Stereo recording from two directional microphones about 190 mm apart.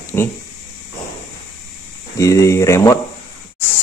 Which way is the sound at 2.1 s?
15° left (ahead or behind).